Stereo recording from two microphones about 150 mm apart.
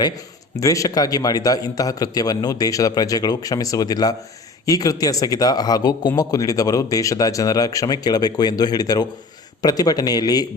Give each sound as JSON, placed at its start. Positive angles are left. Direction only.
{"t": 0.5, "sound": "speech", "side_deg": 20}